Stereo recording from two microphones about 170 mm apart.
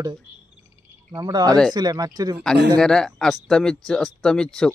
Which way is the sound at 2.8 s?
5° left (ahead or behind).